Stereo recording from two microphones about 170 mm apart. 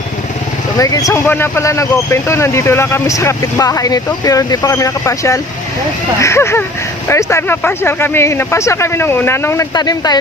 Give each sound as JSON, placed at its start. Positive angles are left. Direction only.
{"t": 0.8, "sound": "speech", "side_deg": 20}